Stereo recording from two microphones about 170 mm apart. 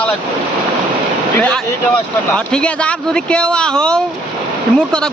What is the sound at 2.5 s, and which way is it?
Speech, 5° left (ahead or behind).